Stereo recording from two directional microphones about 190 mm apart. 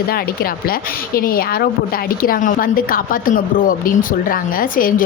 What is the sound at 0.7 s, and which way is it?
A woman's voice, 50° left (ahead or behind).